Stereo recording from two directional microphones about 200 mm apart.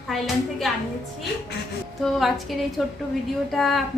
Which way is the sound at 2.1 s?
Centre (ahead or behind).